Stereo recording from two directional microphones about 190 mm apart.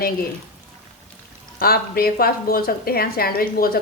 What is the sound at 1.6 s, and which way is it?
A woman's voice, 55° left (ahead or behind).